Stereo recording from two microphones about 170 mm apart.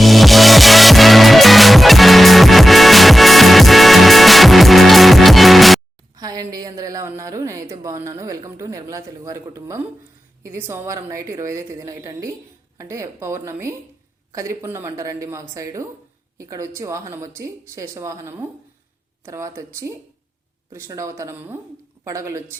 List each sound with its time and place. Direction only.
0.0 s music: centre (ahead or behind)
6.1 s a sound: 20° right (ahead or behind)
10.4 s a woman's voice: 15° right (ahead or behind)